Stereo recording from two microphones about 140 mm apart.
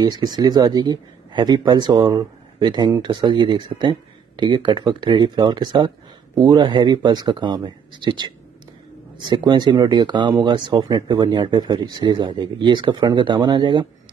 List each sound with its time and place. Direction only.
0.0 s speech: 30° right (ahead or behind)